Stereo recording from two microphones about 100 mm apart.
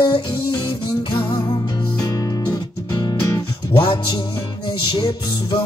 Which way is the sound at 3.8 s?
55° left (ahead or behind).